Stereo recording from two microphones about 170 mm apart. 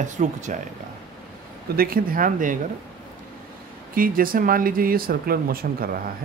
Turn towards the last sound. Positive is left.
turn(degrees=-60)  # may be behind; listen again after turning